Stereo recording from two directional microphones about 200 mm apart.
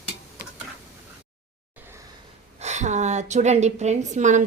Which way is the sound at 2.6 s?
35° right (ahead or behind).